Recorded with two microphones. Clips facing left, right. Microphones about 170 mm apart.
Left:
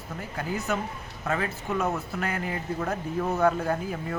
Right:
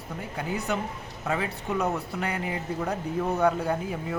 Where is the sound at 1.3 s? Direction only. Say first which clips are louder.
Even; 15° right (ahead or behind).